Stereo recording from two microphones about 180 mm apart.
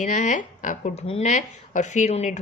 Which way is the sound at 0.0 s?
45° left (ahead or behind).